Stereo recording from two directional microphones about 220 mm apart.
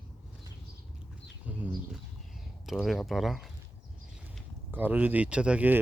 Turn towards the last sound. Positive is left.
turn(degrees=-10)  # may be behind; listen again after turning